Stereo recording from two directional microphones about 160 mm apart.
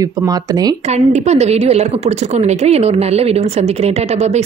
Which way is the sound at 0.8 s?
45° right (ahead or behind).